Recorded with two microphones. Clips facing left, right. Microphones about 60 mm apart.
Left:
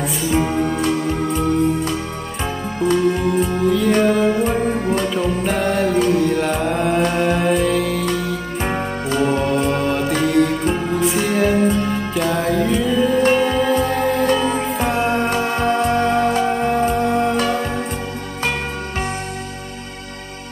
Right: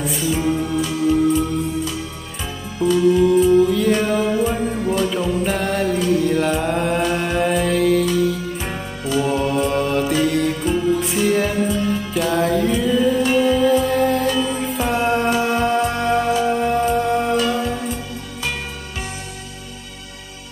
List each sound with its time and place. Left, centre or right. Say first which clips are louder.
0.6 s music: left 2 dB; left
2.9 s music: right 4 dB; left
3.6 s music: left 2 dB; centre
4.6 s music: left 3 dB; left
4.8 s music: even; left
5.4 s music: left 2 dB; centre
9.0 s music: even; left
9.3 s music: left 1 dB; centre
14.2 s music: left 3 dB; left
14.6 s music: left 1 dB; centre
17.6 s music: left 1 dB; left